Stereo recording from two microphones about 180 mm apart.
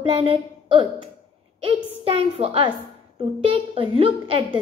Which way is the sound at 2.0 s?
35° right (ahead or behind).